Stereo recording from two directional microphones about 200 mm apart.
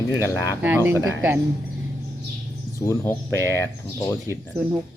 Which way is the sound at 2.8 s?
10° left (ahead or behind).